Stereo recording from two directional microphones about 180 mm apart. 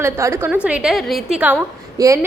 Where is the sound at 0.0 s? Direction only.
15° right (ahead or behind).